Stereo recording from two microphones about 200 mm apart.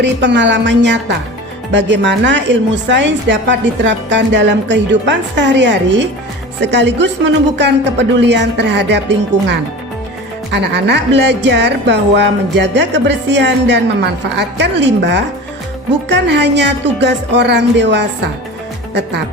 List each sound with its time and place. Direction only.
0.0 s speech: 60° right (ahead or behind)